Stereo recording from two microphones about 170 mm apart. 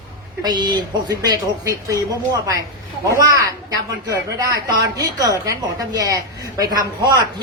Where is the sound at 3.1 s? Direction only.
20° right (ahead or behind).